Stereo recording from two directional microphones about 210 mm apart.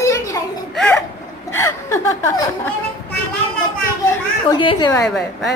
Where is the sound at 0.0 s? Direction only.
15° left (ahead or behind).